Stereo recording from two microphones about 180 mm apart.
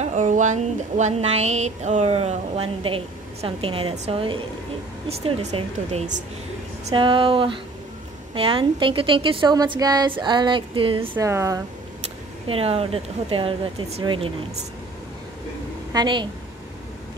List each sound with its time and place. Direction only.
0.0 s a woman's voice: 40° right (ahead or behind)
11.0 s speech: 15° right (ahead or behind)
12.4 s speech: 35° right (ahead or behind)
15.9 s a woman's voice: 25° right (ahead or behind)